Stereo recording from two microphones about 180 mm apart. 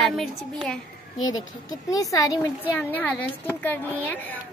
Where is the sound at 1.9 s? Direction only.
20° left (ahead or behind).